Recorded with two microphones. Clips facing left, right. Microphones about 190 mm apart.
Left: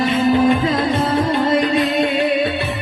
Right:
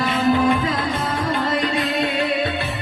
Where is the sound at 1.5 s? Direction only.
20° left (ahead or behind).